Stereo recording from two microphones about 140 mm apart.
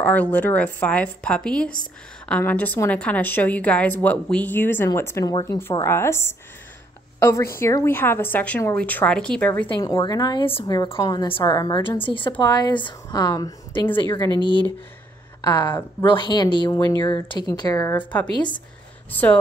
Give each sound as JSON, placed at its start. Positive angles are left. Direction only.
{"t": 0.0, "sound": "a woman's voice", "side_deg": 10}
{"t": 9.8, "sound": "a woman's voice", "side_deg": 30}
{"t": 14.4, "sound": "speech", "side_deg": -30}
{"t": 15.4, "sound": "a woman's voice", "side_deg": 30}
{"t": 16.7, "sound": "a woman's voice", "side_deg": 15}
{"t": 17.0, "sound": "a woman's voice", "side_deg": 35}
{"t": 17.5, "sound": "a woman's voice", "side_deg": 25}
{"t": 17.9, "sound": "a woman's voice", "side_deg": 10}